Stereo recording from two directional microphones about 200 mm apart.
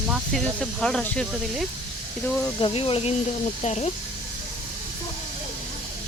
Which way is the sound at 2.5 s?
25° left (ahead or behind).